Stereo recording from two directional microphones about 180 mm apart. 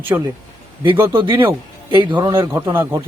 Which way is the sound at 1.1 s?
25° right (ahead or behind).